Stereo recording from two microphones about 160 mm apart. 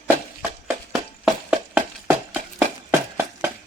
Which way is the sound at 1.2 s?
5° right (ahead or behind).